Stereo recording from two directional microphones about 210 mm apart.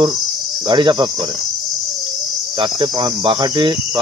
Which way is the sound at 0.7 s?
20° right (ahead or behind).